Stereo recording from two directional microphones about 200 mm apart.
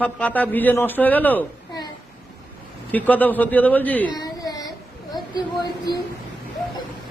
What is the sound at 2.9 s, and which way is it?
A man's voice, 10° left (ahead or behind).